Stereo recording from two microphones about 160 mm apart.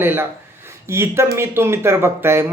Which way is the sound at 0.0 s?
15° right (ahead or behind).